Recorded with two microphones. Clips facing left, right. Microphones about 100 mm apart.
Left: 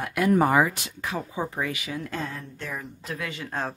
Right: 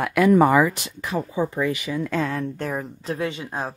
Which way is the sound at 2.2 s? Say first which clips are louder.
Right 9 dB; 85° right.